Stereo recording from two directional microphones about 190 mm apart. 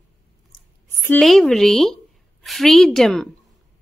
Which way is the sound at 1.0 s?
5° left (ahead or behind).